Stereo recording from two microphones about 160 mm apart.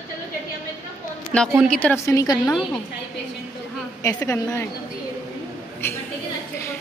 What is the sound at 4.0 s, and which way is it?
Speech, 20° left (ahead or behind).